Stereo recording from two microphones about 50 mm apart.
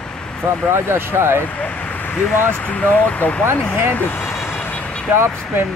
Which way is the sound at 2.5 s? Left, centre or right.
Left.